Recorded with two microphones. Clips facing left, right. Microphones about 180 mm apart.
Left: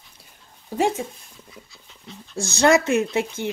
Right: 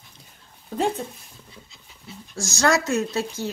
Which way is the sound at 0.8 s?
10° left (ahead or behind).